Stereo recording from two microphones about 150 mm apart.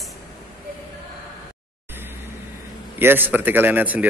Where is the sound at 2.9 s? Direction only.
15° right (ahead or behind).